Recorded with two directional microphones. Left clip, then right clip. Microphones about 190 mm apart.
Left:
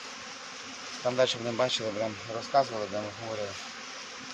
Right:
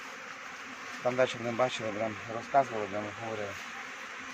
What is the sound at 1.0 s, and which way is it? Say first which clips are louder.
Speech: left 2 dB; 10° left (ahead or behind).